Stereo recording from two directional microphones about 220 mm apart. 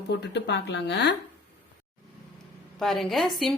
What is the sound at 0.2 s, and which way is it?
Speech, 50° left (ahead or behind).